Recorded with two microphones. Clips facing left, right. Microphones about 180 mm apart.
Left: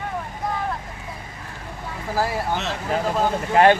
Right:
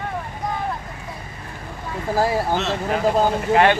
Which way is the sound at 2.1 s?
25° right (ahead or behind).